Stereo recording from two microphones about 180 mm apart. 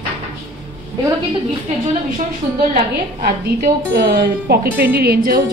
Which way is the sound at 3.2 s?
55° right (ahead or behind).